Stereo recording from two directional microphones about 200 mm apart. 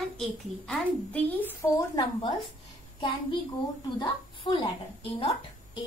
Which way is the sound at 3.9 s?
25° left (ahead or behind).